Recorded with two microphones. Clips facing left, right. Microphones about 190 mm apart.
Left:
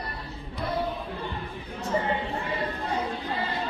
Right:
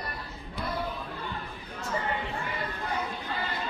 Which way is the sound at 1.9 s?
25° left (ahead or behind).